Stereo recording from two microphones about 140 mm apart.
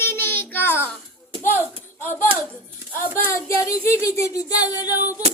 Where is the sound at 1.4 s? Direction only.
15° left (ahead or behind).